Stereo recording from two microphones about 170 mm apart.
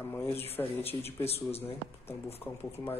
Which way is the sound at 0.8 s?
35° left (ahead or behind).